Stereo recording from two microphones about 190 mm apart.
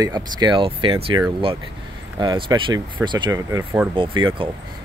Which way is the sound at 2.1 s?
25° right (ahead or behind).